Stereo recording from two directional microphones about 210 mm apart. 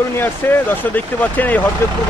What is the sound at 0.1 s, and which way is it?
Speech, 10° left (ahead or behind).